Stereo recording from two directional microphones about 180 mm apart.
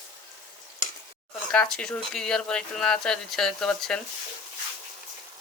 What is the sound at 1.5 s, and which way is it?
Speech, 5° left (ahead or behind).